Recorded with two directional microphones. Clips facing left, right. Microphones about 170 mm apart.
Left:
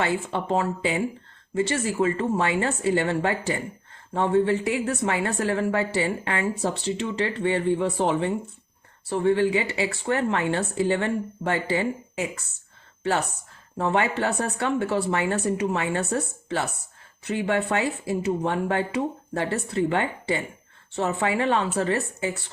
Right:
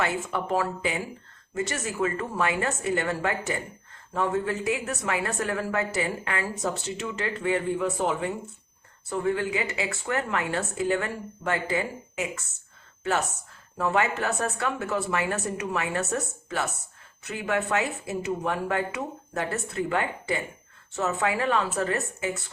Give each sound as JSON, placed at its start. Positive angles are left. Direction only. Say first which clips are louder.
{"t": 0.0, "sound": "a woman's voice", "louder": "left 2 dB", "side_deg": 30}